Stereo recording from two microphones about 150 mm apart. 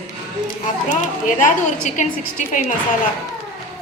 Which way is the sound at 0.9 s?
60° left (ahead or behind).